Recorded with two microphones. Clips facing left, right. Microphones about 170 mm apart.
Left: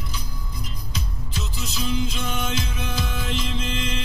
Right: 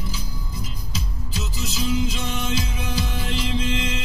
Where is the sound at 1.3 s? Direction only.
30° right (ahead or behind).